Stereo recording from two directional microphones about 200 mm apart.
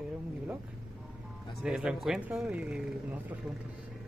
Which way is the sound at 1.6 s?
5° right (ahead or behind).